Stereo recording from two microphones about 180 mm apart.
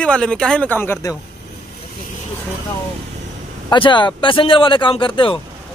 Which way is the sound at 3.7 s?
25° left (ahead or behind).